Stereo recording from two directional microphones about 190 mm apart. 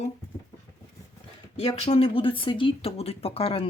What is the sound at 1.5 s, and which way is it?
Speech, 30° left (ahead or behind).